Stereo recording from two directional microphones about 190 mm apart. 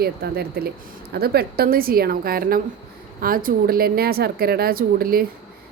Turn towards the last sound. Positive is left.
turn(degrees=-50)  # may be behind; listen again after turning